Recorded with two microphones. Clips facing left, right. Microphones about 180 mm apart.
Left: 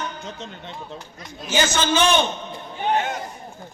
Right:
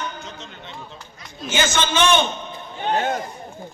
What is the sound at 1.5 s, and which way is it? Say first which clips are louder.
Speech: left 1 dB; 35° left (ahead or behind).